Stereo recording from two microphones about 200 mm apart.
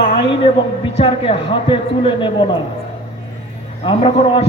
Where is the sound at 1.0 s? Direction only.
30° left (ahead or behind).